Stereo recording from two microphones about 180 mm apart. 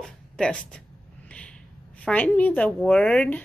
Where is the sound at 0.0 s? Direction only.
5° left (ahead or behind).